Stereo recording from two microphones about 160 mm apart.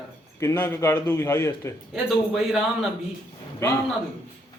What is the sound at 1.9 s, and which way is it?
Speech, centre (ahead or behind).